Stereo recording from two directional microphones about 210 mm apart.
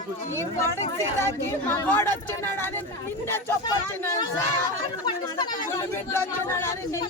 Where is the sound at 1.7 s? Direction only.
10° left (ahead or behind).